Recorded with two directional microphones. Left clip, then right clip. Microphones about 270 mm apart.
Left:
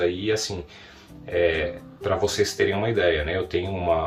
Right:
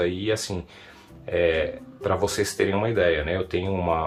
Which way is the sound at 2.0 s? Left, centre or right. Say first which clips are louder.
Left 1 dB; right.